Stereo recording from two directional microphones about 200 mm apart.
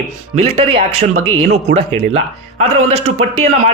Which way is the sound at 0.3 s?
30° right (ahead or behind).